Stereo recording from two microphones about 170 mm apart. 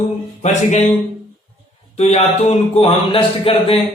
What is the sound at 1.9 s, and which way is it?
Speech, 40° left (ahead or behind).